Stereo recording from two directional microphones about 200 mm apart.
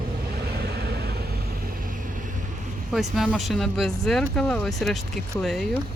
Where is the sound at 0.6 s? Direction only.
55° right (ahead or behind).